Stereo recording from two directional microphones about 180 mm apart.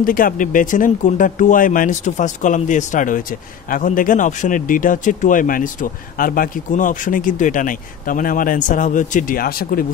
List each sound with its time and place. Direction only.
0.0 s speech: 50° left (ahead or behind)